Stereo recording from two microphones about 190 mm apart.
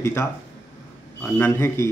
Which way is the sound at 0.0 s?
15° left (ahead or behind).